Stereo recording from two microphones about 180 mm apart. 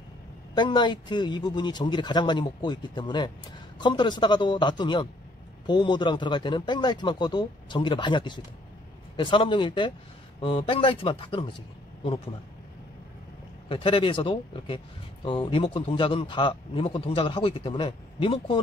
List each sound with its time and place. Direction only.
0.6 s a man's voice: 25° left (ahead or behind)
13.7 s a man's voice: 30° left (ahead or behind)